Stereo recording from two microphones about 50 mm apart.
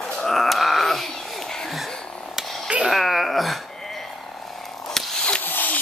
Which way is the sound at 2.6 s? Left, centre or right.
Right.